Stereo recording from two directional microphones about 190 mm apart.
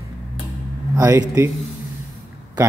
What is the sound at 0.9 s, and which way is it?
Speech, 15° right (ahead or behind).